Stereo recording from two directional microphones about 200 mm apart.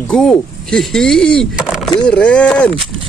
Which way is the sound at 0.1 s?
5° left (ahead or behind).